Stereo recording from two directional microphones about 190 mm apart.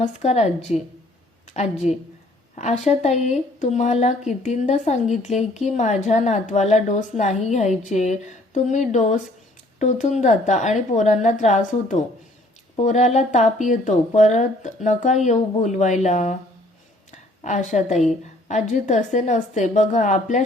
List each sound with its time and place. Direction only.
0.0 s a woman's voice: 35° left (ahead or behind)
2.6 s a woman's voice: 35° left (ahead or behind)